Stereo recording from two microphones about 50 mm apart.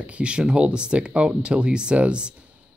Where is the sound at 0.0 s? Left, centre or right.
Right.